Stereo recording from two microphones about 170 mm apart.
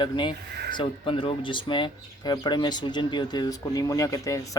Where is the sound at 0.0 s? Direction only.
25° left (ahead or behind).